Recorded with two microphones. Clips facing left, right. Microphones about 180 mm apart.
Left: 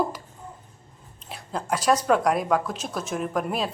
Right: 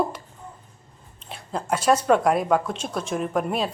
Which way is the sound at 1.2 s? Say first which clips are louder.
Right 2 dB; centre (ahead or behind).